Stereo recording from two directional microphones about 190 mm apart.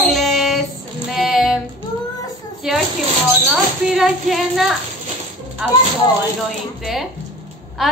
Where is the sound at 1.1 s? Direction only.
Centre (ahead or behind).